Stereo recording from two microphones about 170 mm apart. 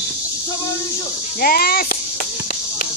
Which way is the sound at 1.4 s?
60° left (ahead or behind).